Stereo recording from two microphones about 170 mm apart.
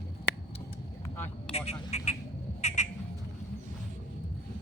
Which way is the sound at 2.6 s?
40° left (ahead or behind).